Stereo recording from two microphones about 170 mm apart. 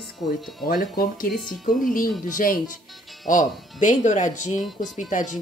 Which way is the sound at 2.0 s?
55° left (ahead or behind).